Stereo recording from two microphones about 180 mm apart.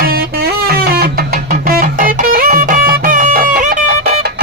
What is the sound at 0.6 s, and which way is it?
Guitar, 55° right (ahead or behind).